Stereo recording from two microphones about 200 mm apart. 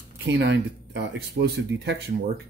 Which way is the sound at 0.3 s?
60° right (ahead or behind).